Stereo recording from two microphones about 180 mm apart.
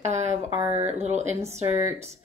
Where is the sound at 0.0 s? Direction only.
40° right (ahead or behind).